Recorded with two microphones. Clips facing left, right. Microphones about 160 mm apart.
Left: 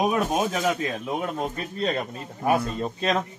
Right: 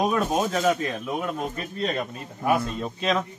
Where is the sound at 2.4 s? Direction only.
40° left (ahead or behind).